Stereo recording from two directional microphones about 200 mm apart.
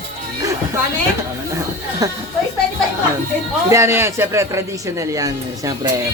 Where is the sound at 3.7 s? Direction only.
15° right (ahead or behind).